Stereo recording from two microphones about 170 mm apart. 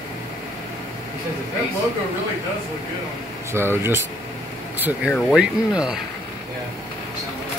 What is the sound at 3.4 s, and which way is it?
Speech, 15° right (ahead or behind).